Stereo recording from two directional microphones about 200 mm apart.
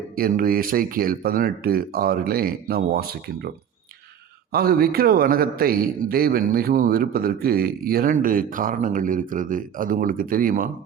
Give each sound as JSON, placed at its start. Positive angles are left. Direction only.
{"t": 0.2, "sound": "a man's voice", "side_deg": -45}
{"t": 4.5, "sound": "a man's voice", "side_deg": -50}